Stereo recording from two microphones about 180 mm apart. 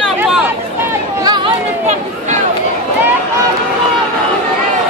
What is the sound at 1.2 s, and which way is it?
Chatter, 25° right (ahead or behind).